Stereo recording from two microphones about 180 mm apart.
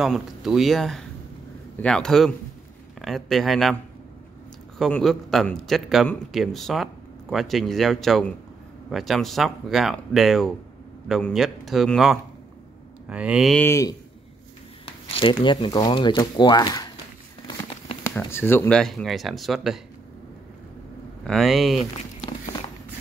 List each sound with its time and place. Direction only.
0.0 s a man's voice: centre (ahead or behind)
4.7 s a man's voice: centre (ahead or behind)
13.6 s speech: 15° left (ahead or behind)
14.9 s speech: 30° left (ahead or behind)
18.1 s a man's voice: 10° left (ahead or behind)
21.2 s a man's voice: centre (ahead or behind)
22.2 s walk: 25° left (ahead or behind)